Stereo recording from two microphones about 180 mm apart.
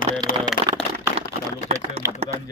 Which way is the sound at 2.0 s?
15° right (ahead or behind).